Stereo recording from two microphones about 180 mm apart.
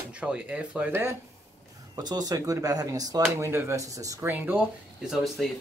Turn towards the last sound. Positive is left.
turn(degrees=0)  # may be behind; listen again after turning